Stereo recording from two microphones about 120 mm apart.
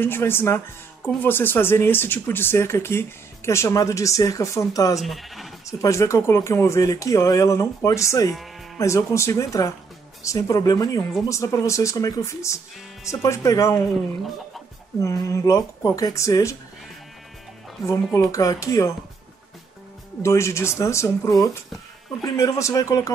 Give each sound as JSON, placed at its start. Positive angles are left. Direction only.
{"t": 0.0, "sound": "speech", "side_deg": 20}
{"t": 5.0, "sound": "speech", "side_deg": 0}
{"t": 5.7, "sound": "speech", "side_deg": 25}
{"t": 15.0, "sound": "speech", "side_deg": 25}
{"t": 18.1, "sound": "speech", "side_deg": 30}
{"t": 20.2, "sound": "speech", "side_deg": 25}